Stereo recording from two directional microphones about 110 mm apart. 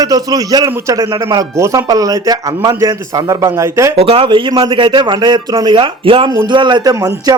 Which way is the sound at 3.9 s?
60° right (ahead or behind).